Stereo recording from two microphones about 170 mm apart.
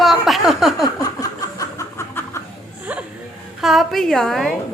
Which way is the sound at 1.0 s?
20° left (ahead or behind).